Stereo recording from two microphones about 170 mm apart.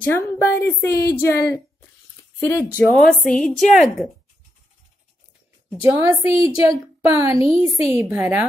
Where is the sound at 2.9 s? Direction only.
Centre (ahead or behind).